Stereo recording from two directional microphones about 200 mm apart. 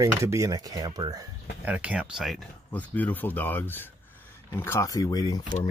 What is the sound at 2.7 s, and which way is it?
Speech, 10° left (ahead or behind).